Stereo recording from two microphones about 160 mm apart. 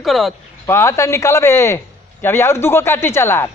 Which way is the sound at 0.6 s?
15° left (ahead or behind).